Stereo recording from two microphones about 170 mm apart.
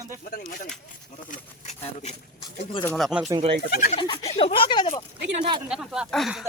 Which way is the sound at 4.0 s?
30° left (ahead or behind).